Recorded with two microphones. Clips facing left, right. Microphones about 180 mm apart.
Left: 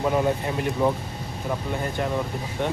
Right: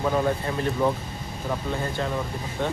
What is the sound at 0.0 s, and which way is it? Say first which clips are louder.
Speech: left 1 dB; 15° left (ahead or behind).